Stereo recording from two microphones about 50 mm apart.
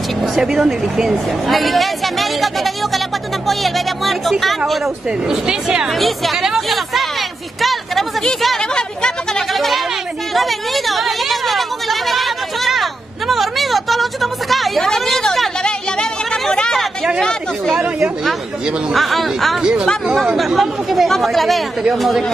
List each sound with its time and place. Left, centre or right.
0.2 s a woman's voice: centre
5.3 s speech: centre
5.9 s a woman's voice: centre
8.7 s a woman's voice: centre
9.5 s a sound: centre
18.9 s a woman's voice: centre
19.6 s speech: centre
20.3 s a woman's voice: centre